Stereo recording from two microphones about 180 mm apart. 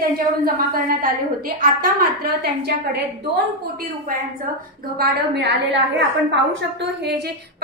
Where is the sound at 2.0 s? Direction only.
60° right (ahead or behind).